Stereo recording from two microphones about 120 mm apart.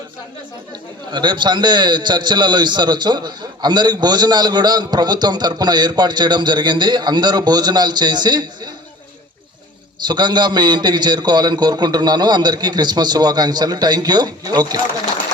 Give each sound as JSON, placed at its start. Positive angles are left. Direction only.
{"t": 1.1, "sound": "a man's voice", "side_deg": -40}
{"t": 10.1, "sound": "a man's voice", "side_deg": -35}